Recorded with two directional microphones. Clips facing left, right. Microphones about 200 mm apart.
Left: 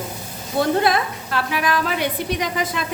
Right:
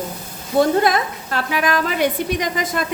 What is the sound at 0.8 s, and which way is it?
A woman's voice, 45° right (ahead or behind).